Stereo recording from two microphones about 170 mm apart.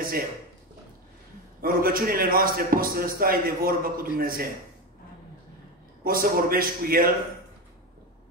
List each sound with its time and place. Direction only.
1.6 s a man's voice: 60° right (ahead or behind)
6.0 s a man's voice: 60° right (ahead or behind)